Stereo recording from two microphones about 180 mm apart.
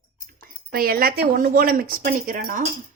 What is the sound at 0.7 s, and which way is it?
Speech, 55° right (ahead or behind).